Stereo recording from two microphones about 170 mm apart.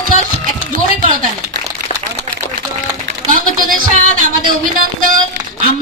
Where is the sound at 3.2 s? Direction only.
55° right (ahead or behind).